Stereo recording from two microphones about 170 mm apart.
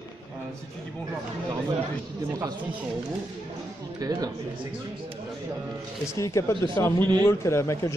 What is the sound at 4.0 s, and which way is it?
Speech, 20° right (ahead or behind).